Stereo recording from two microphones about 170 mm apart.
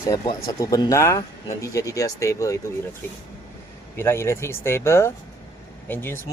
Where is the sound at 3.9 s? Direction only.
15° left (ahead or behind).